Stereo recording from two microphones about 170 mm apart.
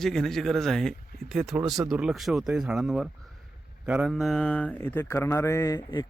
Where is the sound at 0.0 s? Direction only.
Centre (ahead or behind).